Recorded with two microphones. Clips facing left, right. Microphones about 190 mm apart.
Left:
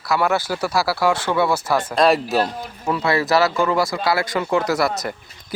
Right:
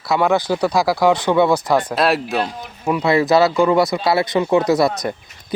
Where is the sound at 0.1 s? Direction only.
15° right (ahead or behind).